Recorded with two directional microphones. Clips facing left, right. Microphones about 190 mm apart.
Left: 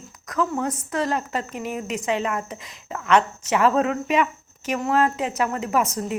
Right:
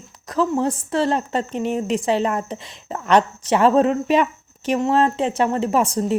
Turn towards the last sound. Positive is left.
turn(degrees=-30)  # may be behind; listen again after turning